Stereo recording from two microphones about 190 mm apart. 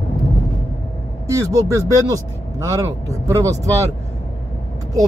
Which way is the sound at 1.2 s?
15° right (ahead or behind).